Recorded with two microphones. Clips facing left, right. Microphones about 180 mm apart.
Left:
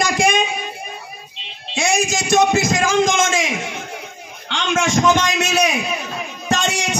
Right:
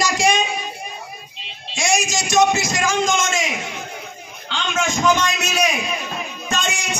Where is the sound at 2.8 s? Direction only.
90° left.